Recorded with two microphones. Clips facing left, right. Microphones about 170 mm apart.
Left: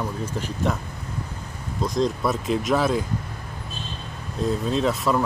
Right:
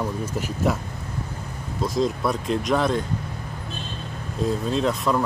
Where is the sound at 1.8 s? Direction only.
Centre (ahead or behind).